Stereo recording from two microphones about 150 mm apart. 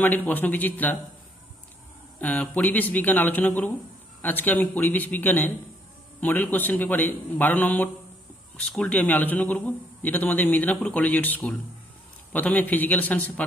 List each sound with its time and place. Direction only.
0.0 s a man's voice: 10° left (ahead or behind)
2.1 s a man's voice: 10° left (ahead or behind)